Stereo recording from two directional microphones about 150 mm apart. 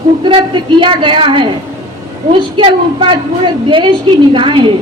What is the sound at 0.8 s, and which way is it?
Speech, 35° right (ahead or behind).